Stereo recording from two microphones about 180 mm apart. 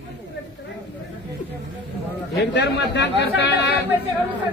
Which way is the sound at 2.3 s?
75° left (ahead or behind).